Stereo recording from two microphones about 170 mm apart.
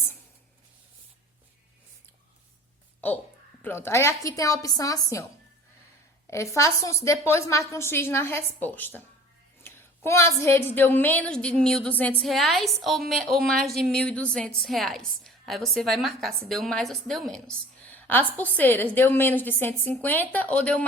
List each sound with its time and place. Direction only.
3.0 s a woman's voice: 10° left (ahead or behind)
6.2 s a woman's voice: 15° left (ahead or behind)